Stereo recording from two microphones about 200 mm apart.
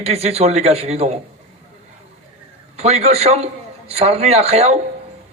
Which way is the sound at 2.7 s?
30° right (ahead or behind).